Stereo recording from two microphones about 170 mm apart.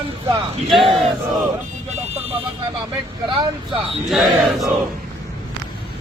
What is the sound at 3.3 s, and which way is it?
Speech, 30° right (ahead or behind).